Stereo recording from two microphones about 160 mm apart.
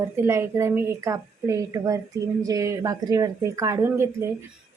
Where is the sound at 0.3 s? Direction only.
15° right (ahead or behind).